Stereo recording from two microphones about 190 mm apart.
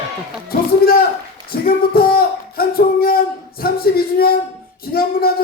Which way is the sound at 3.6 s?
50° left (ahead or behind).